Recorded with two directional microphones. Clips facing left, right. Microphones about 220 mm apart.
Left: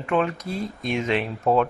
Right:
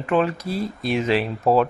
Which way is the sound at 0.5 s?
35° right (ahead or behind).